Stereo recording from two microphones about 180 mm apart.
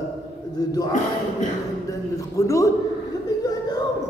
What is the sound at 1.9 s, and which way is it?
Speech, 15° left (ahead or behind).